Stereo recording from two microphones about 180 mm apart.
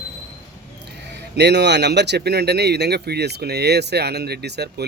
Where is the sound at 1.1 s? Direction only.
70° right (ahead or behind).